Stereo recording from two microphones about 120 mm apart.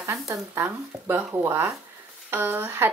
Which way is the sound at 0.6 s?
20° right (ahead or behind).